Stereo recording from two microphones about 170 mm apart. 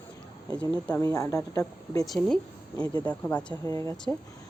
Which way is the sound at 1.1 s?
20° left (ahead or behind).